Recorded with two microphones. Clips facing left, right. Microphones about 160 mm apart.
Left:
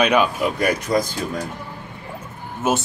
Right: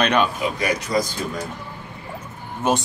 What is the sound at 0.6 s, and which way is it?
Speech, 55° left (ahead or behind).